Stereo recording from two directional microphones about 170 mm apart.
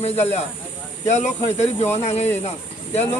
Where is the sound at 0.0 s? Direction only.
40° left (ahead or behind).